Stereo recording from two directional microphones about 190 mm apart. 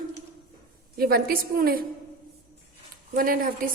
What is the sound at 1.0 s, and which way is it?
Speech, 55° right (ahead or behind).